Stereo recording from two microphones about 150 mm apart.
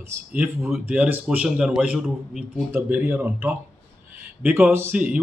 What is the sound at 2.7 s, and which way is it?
A man's voice, 15° right (ahead or behind).